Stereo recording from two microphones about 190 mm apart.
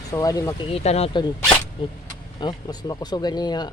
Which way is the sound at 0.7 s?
35° left (ahead or behind).